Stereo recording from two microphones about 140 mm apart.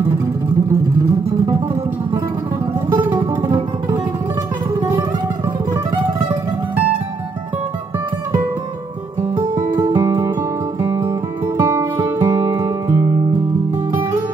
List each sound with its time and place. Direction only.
9.8 s music: 25° right (ahead or behind)